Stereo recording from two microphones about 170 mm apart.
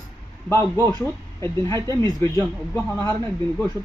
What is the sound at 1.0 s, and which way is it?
Speech, 15° left (ahead or behind).